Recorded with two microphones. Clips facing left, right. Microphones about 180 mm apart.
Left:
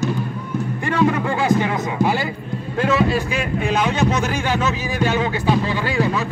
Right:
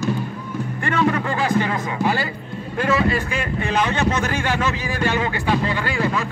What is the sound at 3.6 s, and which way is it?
Speech, 10° left (ahead or behind).